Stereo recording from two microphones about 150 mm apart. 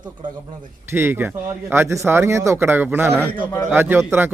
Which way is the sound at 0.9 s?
15° right (ahead or behind).